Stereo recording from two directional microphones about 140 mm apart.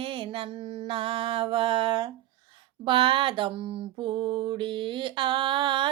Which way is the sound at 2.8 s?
35° right (ahead or behind).